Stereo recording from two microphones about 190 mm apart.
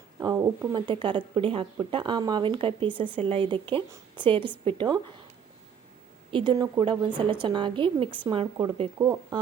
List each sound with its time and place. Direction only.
0.2 s speech: 20° right (ahead or behind)
6.3 s speech: 25° right (ahead or behind)